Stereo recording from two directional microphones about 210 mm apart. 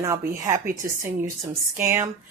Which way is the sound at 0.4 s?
15° right (ahead or behind).